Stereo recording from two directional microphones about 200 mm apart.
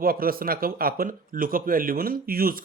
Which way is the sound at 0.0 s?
45° right (ahead or behind).